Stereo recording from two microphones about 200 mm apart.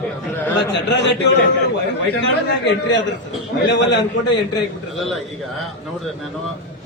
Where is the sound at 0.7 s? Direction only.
60° left (ahead or behind).